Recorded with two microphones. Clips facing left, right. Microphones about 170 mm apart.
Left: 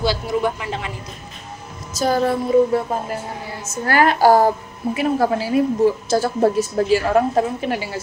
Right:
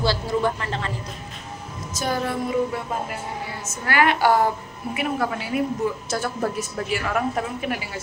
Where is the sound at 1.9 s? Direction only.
35° left (ahead or behind).